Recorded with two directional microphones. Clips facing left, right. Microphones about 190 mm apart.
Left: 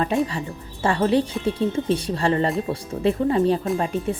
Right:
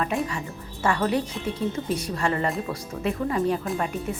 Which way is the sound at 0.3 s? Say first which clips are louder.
Left 3 dB; 30° left (ahead or behind).